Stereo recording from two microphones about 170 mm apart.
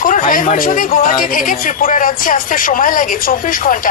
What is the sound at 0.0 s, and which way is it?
Speech, 55° left (ahead or behind).